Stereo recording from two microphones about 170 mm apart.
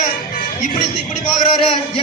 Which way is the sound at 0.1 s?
55° left (ahead or behind).